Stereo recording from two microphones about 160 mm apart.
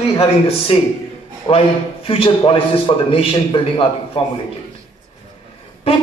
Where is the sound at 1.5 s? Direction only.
35° left (ahead or behind).